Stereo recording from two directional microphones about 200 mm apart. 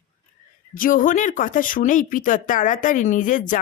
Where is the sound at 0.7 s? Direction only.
45° left (ahead or behind).